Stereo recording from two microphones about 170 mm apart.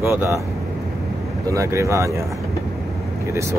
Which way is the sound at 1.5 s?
15° right (ahead or behind).